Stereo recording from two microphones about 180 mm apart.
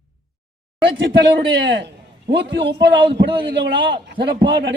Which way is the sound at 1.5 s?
75° right (ahead or behind).